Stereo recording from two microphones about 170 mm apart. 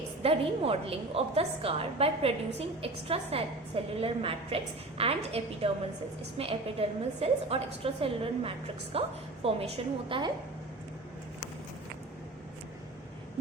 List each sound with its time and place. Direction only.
0.2 s a woman's voice: 35° right (ahead or behind)